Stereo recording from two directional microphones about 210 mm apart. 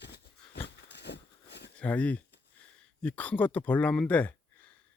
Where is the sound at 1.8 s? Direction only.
5° left (ahead or behind).